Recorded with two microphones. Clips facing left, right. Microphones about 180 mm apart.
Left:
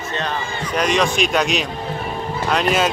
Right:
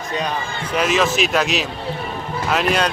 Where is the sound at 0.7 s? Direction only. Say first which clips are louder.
Even; 5° right (ahead or behind).